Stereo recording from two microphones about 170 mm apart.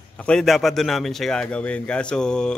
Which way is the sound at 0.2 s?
5° left (ahead or behind).